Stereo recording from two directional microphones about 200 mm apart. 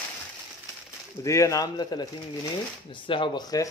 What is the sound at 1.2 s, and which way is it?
Speech, 15° left (ahead or behind).